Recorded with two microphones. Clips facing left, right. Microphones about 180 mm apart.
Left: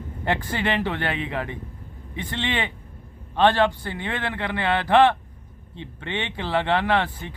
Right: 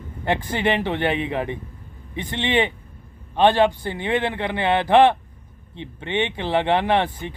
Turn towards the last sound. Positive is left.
turn(degrees=-20)  # may be behind; listen again after turning